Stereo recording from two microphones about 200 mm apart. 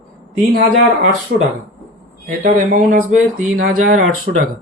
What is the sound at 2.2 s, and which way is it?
Speech, 40° right (ahead or behind).